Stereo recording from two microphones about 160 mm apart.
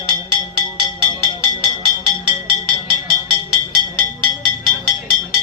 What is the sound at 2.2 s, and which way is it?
Music, 30° right (ahead or behind).